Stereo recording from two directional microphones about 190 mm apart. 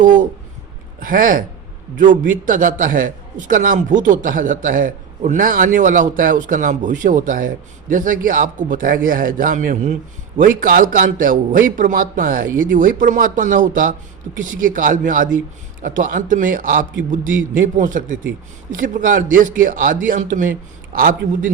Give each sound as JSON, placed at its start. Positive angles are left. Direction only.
{"t": 0.0, "sound": "a man's voice", "side_deg": -45}